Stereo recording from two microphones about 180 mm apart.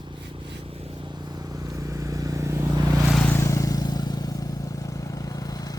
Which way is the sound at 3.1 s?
5° left (ahead or behind).